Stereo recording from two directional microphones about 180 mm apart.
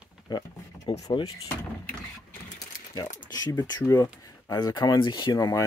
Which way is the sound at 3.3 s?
20° left (ahead or behind).